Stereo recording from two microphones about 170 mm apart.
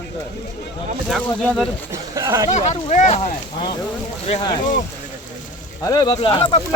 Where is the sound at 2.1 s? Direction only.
20° right (ahead or behind).